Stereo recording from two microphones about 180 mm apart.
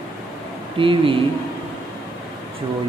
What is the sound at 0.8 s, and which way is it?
Speech, 30° right (ahead or behind).